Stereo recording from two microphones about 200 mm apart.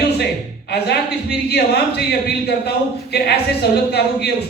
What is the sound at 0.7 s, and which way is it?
Speech, 55° left (ahead or behind).